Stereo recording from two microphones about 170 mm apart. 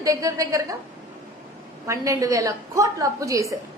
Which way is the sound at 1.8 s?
20° right (ahead or behind).